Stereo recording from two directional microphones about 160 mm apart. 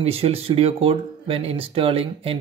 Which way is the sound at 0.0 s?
40° right (ahead or behind).